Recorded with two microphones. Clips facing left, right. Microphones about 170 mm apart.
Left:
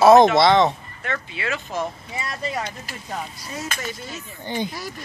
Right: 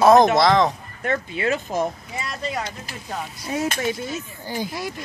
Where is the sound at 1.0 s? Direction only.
40° right (ahead or behind).